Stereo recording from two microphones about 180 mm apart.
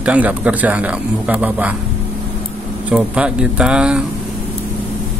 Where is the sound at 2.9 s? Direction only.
5° right (ahead or behind).